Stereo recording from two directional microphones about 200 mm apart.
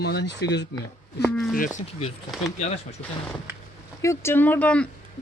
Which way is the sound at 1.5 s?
40° left (ahead or behind).